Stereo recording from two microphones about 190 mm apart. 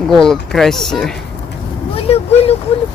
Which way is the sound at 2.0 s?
30° left (ahead or behind).